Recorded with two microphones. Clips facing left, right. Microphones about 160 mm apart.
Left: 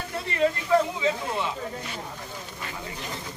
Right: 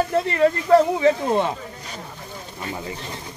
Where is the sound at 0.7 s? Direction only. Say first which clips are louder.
Right 7 dB; 55° right (ahead or behind).